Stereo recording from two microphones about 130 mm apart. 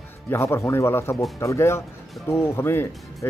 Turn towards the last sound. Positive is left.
turn(degrees=20)  # may be behind; listen again after turning